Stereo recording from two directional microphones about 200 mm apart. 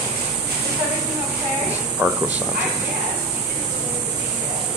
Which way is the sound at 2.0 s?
10° right (ahead or behind).